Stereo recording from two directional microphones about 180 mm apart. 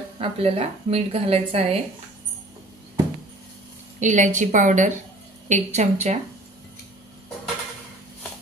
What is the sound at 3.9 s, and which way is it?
A woman's voice, 45° right (ahead or behind).